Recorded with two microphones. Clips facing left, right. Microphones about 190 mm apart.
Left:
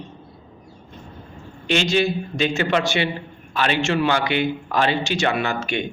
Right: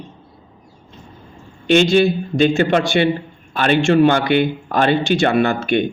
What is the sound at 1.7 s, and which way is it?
A man's voice, 55° right (ahead or behind).